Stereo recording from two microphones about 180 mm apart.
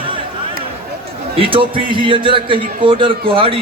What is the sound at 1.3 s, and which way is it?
A man's voice, 30° right (ahead or behind).